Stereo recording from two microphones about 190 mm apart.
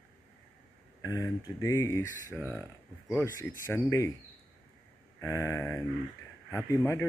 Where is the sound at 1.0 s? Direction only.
20° left (ahead or behind).